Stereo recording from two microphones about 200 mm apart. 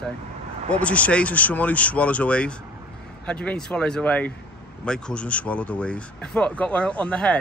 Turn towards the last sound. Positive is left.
turn(degrees=5)  # may be behind; listen again after turning